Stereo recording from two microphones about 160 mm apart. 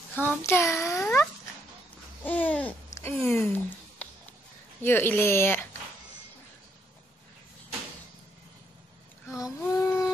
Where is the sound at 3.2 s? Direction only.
15° left (ahead or behind).